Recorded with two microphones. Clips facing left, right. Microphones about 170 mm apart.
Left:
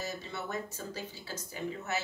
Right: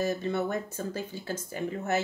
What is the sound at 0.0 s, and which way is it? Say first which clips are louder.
Speech: right 11 dB; 50° right (ahead or behind).